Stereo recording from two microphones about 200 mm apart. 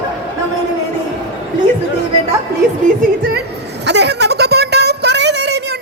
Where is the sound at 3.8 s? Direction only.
55° right (ahead or behind).